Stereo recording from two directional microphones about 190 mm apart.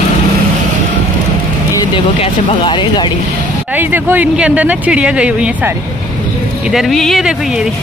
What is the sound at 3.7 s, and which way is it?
Speech, 10° right (ahead or behind).